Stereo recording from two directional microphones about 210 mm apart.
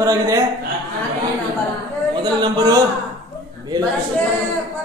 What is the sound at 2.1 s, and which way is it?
Speech, 20° right (ahead or behind).